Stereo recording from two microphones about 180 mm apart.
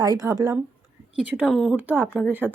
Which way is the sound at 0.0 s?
20° right (ahead or behind).